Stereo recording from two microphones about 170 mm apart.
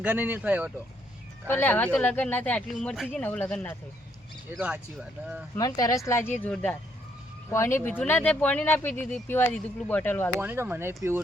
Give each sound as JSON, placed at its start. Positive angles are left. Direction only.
{"t": 0.0, "sound": "speech", "side_deg": -10}
{"t": 1.5, "sound": "speech", "side_deg": 10}
{"t": 4.5, "sound": "speech", "side_deg": -5}
{"t": 5.5, "sound": "speech", "side_deg": 20}
{"t": 10.4, "sound": "speech", "side_deg": -10}